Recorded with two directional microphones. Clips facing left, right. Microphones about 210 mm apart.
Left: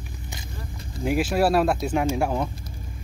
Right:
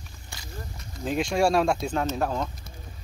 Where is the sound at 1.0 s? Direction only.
5° left (ahead or behind).